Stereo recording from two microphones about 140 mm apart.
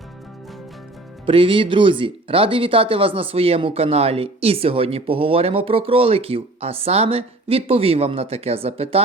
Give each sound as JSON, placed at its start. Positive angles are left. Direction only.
{"t": 1.2, "sound": "speech", "side_deg": -40}